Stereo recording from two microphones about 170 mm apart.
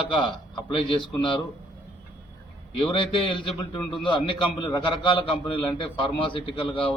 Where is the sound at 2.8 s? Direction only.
30° left (ahead or behind).